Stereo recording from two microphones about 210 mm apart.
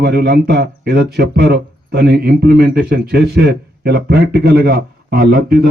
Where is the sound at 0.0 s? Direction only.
50° right (ahead or behind).